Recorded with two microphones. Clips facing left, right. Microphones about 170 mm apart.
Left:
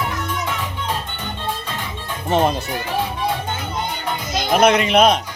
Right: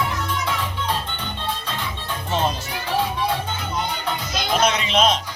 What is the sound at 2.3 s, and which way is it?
Speech, 55° left (ahead or behind).